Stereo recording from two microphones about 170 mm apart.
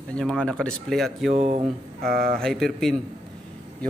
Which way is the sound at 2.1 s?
60° right (ahead or behind).